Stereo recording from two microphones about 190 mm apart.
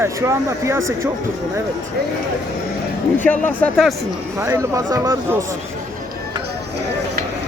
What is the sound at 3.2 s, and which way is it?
Speech, 10° left (ahead or behind).